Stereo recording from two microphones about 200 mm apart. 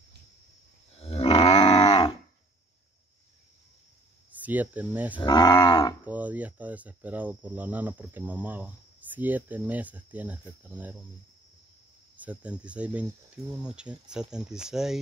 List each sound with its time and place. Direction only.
1.0 s cattle: 30° left (ahead or behind)
1.6 s dog: 25° left (ahead or behind)
4.3 s speech: 10° right (ahead or behind)
5.2 s speech: 20° left (ahead or behind)
6.0 s speech: 10° right (ahead or behind)
12.2 s speech: 5° right (ahead or behind)